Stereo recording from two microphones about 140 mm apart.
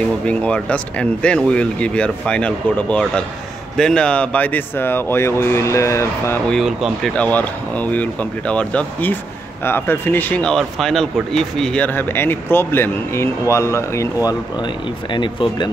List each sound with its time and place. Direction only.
0.3 s speech: 10° left (ahead or behind)
6.5 s speech: centre (ahead or behind)
7.2 s speech: 10° left (ahead or behind)
14.6 s speech: 35° left (ahead or behind)